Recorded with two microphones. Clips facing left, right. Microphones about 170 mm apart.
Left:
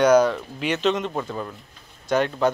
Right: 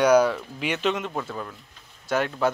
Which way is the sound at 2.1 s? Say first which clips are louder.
Left 3 dB; 5° right (ahead or behind).